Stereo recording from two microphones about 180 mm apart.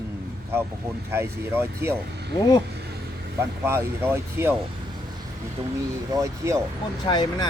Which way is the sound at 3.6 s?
15° right (ahead or behind).